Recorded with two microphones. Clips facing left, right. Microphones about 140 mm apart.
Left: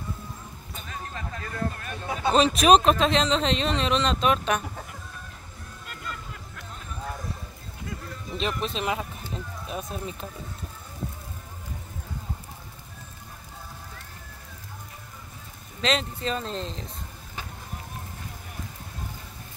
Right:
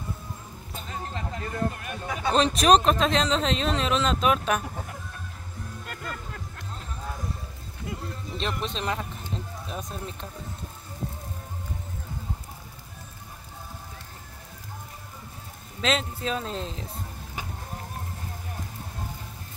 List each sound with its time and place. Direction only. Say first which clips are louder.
0.8 s a sound: right 2 dB; 25° right (ahead or behind)
2.3 s speech: left 1 dB; 5° left (ahead or behind)
6.1 s music: even; 50° right (ahead or behind)
8.4 s speech: left 2 dB; 5° left (ahead or behind)
15.8 s speech: even; centre (ahead or behind)